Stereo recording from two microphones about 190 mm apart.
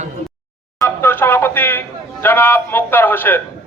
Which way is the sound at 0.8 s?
10° left (ahead or behind).